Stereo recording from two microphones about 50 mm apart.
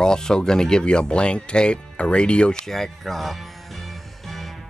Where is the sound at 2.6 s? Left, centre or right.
Centre.